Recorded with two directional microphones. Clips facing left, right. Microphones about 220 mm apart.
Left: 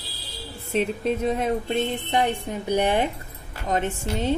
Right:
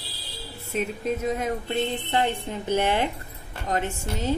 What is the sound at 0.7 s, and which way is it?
A woman's voice, 30° left (ahead or behind).